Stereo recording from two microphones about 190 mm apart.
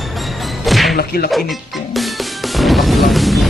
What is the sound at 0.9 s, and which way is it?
Music, 55° left (ahead or behind).